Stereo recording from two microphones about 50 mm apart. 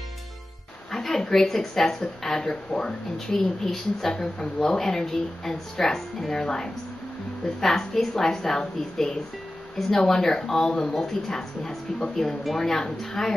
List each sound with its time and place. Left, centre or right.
0.9 s a woman's voice: centre
6.4 s a woman's voice: centre